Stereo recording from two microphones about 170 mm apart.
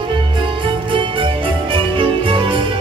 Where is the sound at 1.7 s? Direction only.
30° right (ahead or behind).